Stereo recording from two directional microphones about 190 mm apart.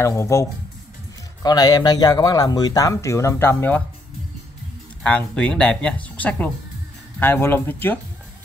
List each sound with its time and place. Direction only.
0.0 s speech: 15° left (ahead or behind)
5.0 s speech: 5° left (ahead or behind)